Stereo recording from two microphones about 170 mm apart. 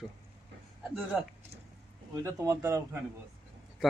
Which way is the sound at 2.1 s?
20° right (ahead or behind).